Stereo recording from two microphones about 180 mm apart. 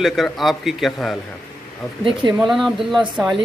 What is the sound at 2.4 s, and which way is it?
Speech, centre (ahead or behind).